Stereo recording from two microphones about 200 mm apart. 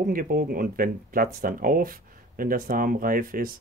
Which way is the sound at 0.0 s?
45° right (ahead or behind).